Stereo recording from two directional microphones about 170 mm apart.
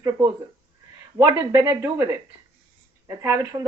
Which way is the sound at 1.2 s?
20° right (ahead or behind).